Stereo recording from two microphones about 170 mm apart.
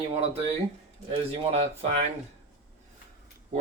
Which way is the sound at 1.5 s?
35° right (ahead or behind).